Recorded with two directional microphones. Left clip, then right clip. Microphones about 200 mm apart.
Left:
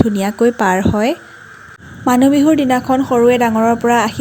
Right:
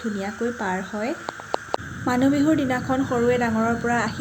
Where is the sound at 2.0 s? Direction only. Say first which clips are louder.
Left 9 dB; 40° left (ahead or behind).